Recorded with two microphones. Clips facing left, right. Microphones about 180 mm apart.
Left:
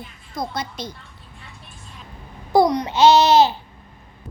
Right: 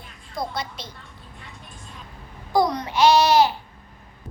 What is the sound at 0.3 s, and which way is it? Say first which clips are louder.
Speech: left 2 dB; 45° left (ahead or behind).